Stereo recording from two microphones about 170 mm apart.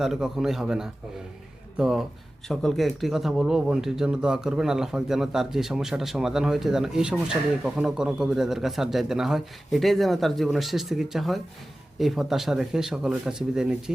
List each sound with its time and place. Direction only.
0.0 s speech: 5° right (ahead or behind)